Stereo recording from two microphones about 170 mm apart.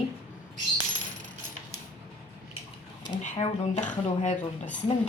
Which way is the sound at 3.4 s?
45° left (ahead or behind).